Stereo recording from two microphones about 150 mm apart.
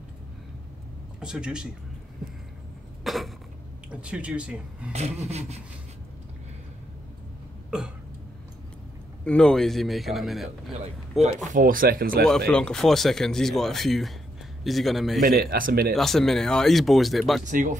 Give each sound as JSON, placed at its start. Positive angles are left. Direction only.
{"t": 1.2, "sound": "speech", "side_deg": -5}
{"t": 3.0, "sound": "a sound", "side_deg": 0}
{"t": 3.9, "sound": "speech", "side_deg": -10}
{"t": 4.9, "sound": "a sound", "side_deg": -45}
{"t": 9.2, "sound": "speech", "side_deg": 5}
{"t": 10.8, "sound": "speech", "side_deg": -50}
{"t": 12.3, "sound": "speech", "side_deg": 5}
{"t": 15.2, "sound": "a man's voice", "side_deg": -75}
{"t": 15.9, "sound": "speech", "side_deg": 0}
{"t": 17.5, "sound": "speech", "side_deg": -60}